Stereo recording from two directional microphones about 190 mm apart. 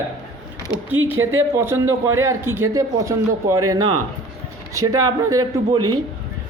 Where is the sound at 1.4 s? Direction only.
15° right (ahead or behind).